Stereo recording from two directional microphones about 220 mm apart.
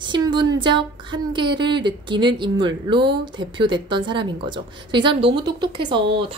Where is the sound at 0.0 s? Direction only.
20° right (ahead or behind).